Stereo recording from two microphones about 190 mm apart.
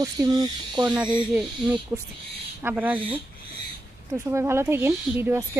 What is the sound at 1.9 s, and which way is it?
Speech, 15° right (ahead or behind).